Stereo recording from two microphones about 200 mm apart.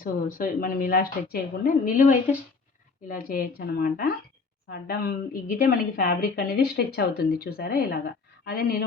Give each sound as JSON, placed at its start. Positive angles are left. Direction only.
{"t": 0.0, "sound": "a woman's voice", "side_deg": 45}